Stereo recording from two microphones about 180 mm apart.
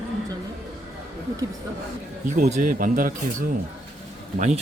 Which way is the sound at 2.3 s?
45° right (ahead or behind).